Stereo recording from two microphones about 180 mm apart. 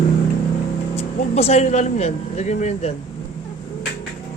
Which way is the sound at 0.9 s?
35° left (ahead or behind).